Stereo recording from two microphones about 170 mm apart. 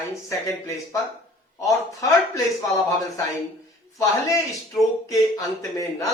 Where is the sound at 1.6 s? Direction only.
20° left (ahead or behind).